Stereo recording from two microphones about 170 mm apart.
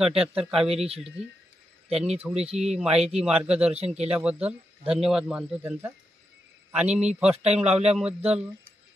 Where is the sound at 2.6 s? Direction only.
5° right (ahead or behind).